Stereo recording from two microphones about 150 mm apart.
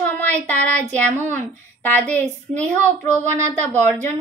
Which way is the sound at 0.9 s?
10° left (ahead or behind).